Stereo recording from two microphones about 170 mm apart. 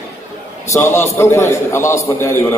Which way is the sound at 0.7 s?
15° left (ahead or behind).